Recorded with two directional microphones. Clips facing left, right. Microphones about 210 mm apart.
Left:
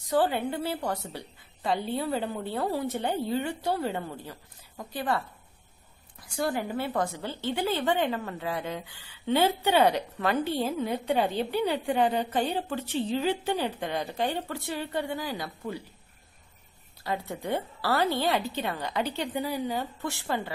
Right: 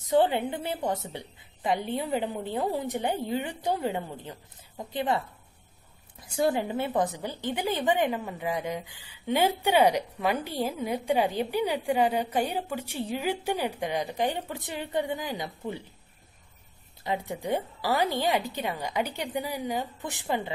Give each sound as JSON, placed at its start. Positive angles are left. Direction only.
{"t": 0.0, "sound": "a woman's voice", "side_deg": -20}
{"t": 6.4, "sound": "a woman's voice", "side_deg": -20}
{"t": 17.0, "sound": "a woman's voice", "side_deg": -15}